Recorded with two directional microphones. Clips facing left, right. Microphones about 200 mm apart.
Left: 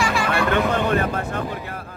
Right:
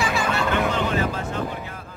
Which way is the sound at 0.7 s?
55° left (ahead or behind).